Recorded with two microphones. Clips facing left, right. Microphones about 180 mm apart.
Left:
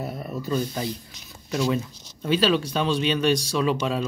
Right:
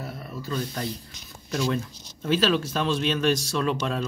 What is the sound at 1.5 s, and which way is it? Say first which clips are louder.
Speech: left 2 dB; 5° left (ahead or behind).